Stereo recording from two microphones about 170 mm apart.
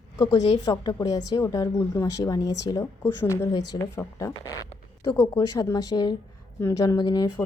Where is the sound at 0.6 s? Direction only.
20° left (ahead or behind).